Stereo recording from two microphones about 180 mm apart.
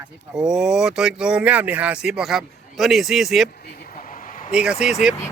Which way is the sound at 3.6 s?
60° left (ahead or behind).